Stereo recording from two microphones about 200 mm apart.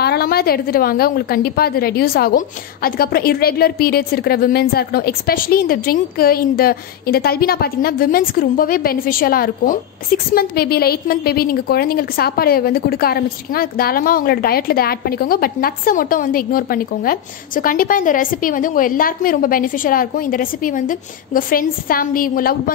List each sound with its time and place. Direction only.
0.0 s a woman's voice: 55° left (ahead or behind)